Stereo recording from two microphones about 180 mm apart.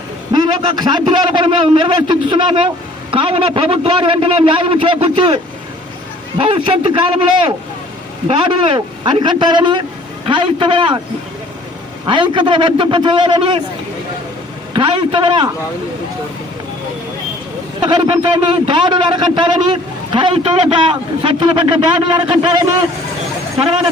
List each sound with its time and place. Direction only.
0.3 s a man's voice: 25° right (ahead or behind)
6.4 s a man's voice: 30° right (ahead or behind)
8.3 s a man's voice: 25° right (ahead or behind)
12.0 s a man's voice: 25° right (ahead or behind)
14.7 s a man's voice: 30° right (ahead or behind)
17.7 s a man's voice: 25° right (ahead or behind)